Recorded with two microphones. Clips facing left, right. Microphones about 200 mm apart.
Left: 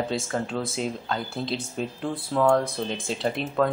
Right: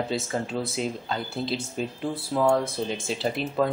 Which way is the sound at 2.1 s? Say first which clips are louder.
Left 1 dB; 25° right (ahead or behind).